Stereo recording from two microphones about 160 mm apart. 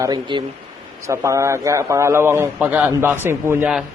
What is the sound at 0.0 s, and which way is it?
A man's voice, 30° right (ahead or behind).